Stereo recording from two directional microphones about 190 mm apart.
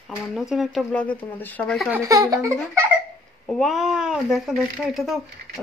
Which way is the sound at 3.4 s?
5° left (ahead or behind).